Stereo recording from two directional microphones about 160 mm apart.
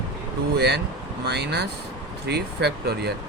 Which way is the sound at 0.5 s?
90° right.